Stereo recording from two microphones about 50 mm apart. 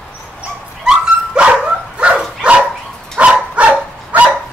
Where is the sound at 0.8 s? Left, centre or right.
Centre.